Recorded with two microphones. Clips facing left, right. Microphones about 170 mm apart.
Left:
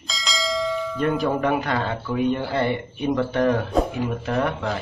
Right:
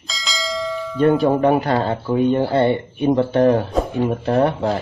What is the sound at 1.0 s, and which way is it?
Speech, 30° right (ahead or behind).